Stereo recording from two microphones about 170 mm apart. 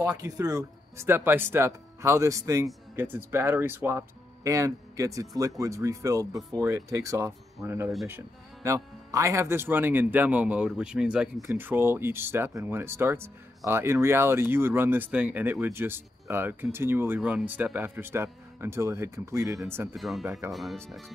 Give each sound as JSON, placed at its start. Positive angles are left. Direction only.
{"t": 0.0, "sound": "speech", "side_deg": -20}
{"t": 19.9, "sound": "speech", "side_deg": 0}
{"t": 20.2, "sound": "speech", "side_deg": -15}
{"t": 20.5, "sound": "speech", "side_deg": 0}